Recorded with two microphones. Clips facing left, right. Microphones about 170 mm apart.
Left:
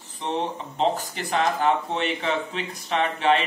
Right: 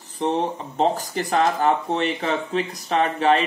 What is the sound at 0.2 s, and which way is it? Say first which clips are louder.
Speech: right 5 dB; 40° right (ahead or behind).